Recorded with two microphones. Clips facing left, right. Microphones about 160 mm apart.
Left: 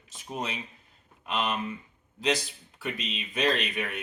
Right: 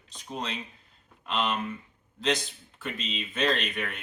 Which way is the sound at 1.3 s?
5° left (ahead or behind).